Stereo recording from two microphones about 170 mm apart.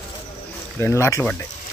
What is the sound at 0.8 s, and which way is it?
Speech, 15° left (ahead or behind).